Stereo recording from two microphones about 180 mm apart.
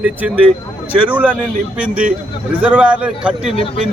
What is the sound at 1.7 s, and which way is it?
Speech, 5° right (ahead or behind).